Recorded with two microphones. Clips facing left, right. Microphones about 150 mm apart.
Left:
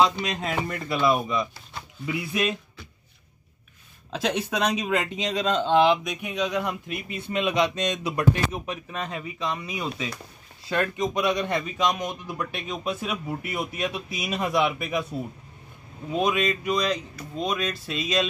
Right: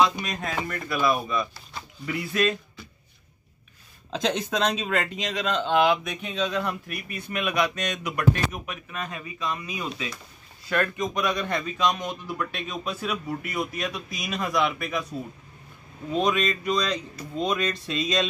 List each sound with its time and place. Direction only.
0.3 s speech: 20° left (ahead or behind)
4.1 s speech: 5° left (ahead or behind); by 5.9 s 25° left (ahead or behind)
6.0 s speech: 15° left (ahead or behind)
16.1 s speech: 10° left (ahead or behind)